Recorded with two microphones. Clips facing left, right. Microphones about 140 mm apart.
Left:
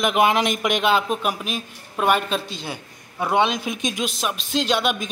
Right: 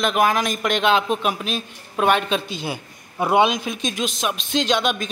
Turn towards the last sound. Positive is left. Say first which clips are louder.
# right 1 dB
turn(degrees=10)  # may be behind; listen again after turning